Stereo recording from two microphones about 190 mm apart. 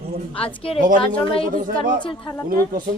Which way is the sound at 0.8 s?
45° right (ahead or behind).